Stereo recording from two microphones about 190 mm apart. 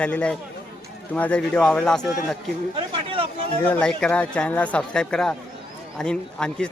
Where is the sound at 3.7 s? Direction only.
5° left (ahead or behind).